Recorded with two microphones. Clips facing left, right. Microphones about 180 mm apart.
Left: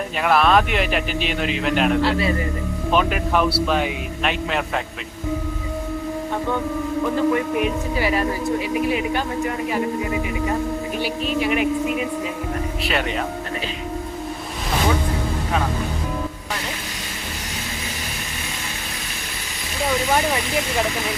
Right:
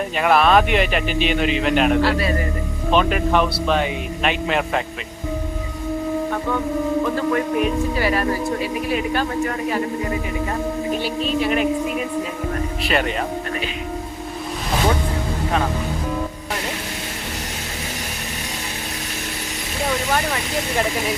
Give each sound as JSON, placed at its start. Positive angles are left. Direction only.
{"t": 0.2, "sound": "a man's voice", "side_deg": 0}
{"t": 2.0, "sound": "a man's voice", "side_deg": 20}
{"t": 2.9, "sound": "a man's voice", "side_deg": 5}
{"t": 8.9, "sound": "speech", "side_deg": 15}
{"t": 11.0, "sound": "speech", "side_deg": 15}
{"t": 12.9, "sound": "a man's voice", "side_deg": 0}